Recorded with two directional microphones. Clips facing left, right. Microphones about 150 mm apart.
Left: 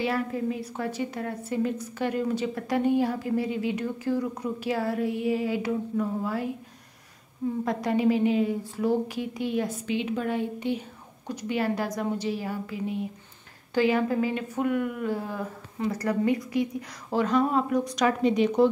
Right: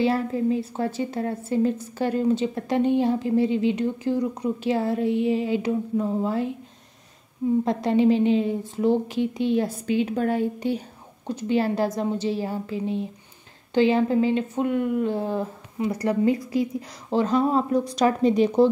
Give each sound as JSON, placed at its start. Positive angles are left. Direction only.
{"t": 0.0, "sound": "a woman's voice", "side_deg": -30}
{"t": 7.6, "sound": "a woman's voice", "side_deg": -25}
{"t": 11.2, "sound": "a woman's voice", "side_deg": -30}